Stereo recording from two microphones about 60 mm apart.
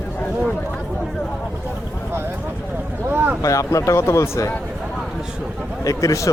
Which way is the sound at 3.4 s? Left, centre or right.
Left.